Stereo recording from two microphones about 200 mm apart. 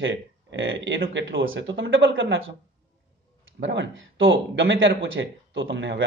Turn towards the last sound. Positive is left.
turn(degrees=-65)  # may be behind; listen again after turning